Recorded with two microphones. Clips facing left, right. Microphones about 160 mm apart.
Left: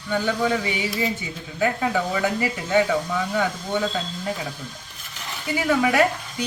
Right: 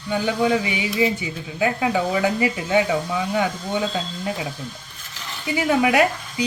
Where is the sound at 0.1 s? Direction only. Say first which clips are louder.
Right 2 dB; 15° right (ahead or behind).